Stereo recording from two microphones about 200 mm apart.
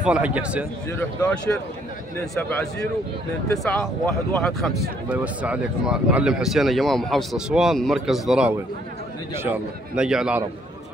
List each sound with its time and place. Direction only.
0.0 s speech: 5° right (ahead or behind)
0.9 s speech: 5° left (ahead or behind)
3.5 s speech: 5° left (ahead or behind)